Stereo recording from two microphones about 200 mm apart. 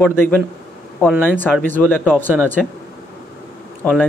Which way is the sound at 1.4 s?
10° left (ahead or behind).